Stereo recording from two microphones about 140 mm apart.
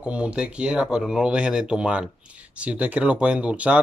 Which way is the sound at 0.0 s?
10° right (ahead or behind).